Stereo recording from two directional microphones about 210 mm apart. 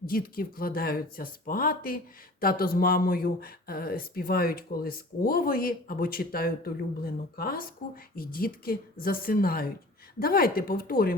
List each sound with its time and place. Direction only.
0.0 s speech: 45° left (ahead or behind)